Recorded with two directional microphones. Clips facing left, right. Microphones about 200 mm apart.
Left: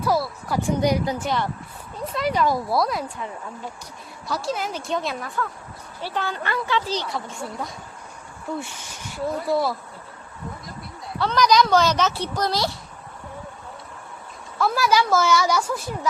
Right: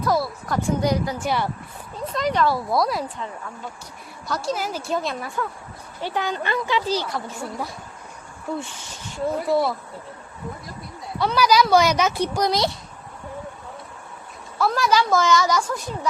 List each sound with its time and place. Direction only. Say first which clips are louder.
0.0 s speech: even; 5° left (ahead or behind)
1.2 s speech: right 1 dB; 10° right (ahead or behind)
2.1 s speech: even; 5° left (ahead or behind)
2.7 s a woman's voice: right 2 dB; centre (ahead or behind)
4.3 s a woman's voice: right 1 dB; centre (ahead or behind)
6.0 s a woman's voice: right 2 dB; 15° right (ahead or behind)
8.8 s speech: even; 15° left (ahead or behind)
9.5 s a woman's voice: right 1 dB; centre (ahead or behind)
11.2 s speech: even; 5° right (ahead or behind)
14.6 s speech: even; 5° left (ahead or behind)